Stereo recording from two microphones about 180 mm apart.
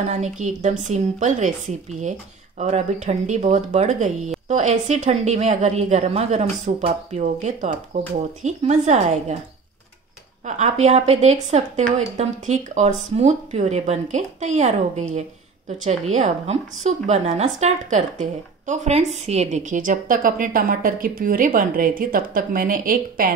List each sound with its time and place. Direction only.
0.0 s a woman's voice: 40° right (ahead or behind)
10.4 s a woman's voice: 40° right (ahead or behind)